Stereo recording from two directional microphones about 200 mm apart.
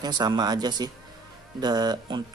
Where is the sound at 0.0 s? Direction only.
20° right (ahead or behind).